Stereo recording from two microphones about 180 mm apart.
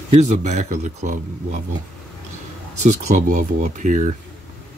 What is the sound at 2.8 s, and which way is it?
Speech, 40° right (ahead or behind).